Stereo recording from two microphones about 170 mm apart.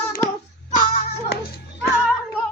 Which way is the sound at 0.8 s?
60° left (ahead or behind).